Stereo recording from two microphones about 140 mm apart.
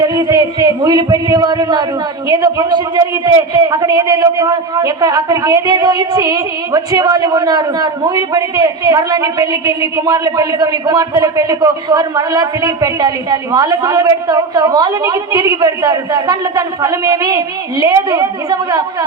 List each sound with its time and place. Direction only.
0.0 s a man's voice: 30° right (ahead or behind)